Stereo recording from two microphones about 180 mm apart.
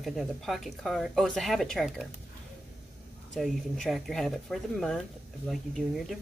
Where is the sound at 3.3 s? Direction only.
Centre (ahead or behind).